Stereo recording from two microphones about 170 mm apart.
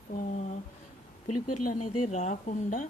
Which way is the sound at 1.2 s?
40° left (ahead or behind).